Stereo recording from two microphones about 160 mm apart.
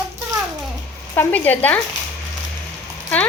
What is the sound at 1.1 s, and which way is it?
Speech, 10° left (ahead or behind).